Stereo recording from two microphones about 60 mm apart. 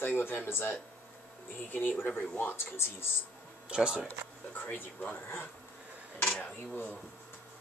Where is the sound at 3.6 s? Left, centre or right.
Centre.